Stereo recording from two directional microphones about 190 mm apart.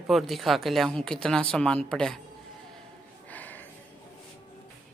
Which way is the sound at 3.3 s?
10° left (ahead or behind).